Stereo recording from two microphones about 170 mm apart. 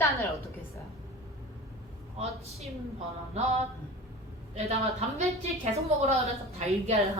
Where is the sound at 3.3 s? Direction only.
40° right (ahead or behind).